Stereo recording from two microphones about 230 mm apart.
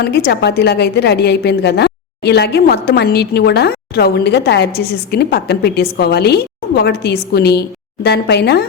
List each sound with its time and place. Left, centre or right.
0.0 s a woman's voice: left